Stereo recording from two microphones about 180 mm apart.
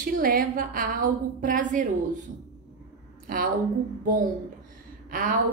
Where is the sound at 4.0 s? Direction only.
50° right (ahead or behind).